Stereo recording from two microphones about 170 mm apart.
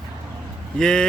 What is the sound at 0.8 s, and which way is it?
Speech, 5° left (ahead or behind).